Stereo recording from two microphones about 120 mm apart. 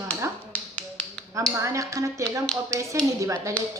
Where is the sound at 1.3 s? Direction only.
25° right (ahead or behind).